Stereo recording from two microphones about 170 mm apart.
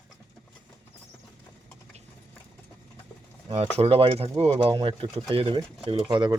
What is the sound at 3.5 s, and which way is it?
Speech, 35° right (ahead or behind).